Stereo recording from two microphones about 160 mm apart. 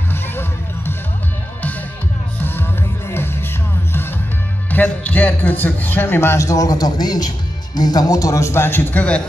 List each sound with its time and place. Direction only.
0.1 s music: 15° left (ahead or behind)
3.1 s music: 15° left (ahead or behind)
4.6 s a man's voice: 10° left (ahead or behind)